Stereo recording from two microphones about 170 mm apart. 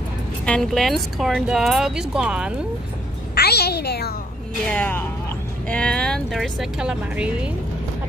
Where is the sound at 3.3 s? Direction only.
70° left (ahead or behind).